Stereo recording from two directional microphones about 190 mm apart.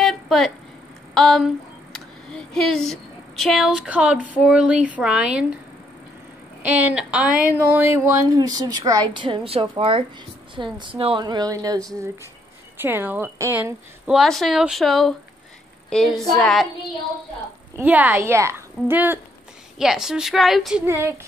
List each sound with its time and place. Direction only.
0.0 s a sound: centre (ahead or behind)
1.1 s speech: centre (ahead or behind)
6.6 s a woman's voice: 10° right (ahead or behind)
17.7 s a woman's voice: 10° right (ahead or behind)
20.8 s speech: 15° right (ahead or behind)